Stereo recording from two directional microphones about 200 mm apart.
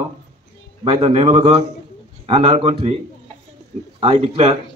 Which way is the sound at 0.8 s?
25° right (ahead or behind).